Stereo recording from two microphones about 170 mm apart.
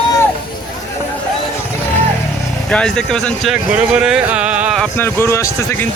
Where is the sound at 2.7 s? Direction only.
5° left (ahead or behind).